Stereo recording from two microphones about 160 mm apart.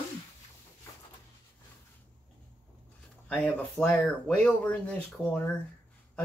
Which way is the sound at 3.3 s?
5° left (ahead or behind).